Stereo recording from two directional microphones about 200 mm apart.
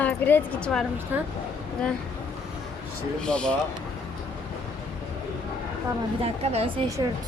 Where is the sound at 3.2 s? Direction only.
5° left (ahead or behind).